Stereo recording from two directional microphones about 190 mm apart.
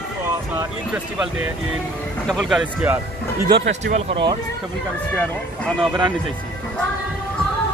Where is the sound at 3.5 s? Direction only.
70° right (ahead or behind).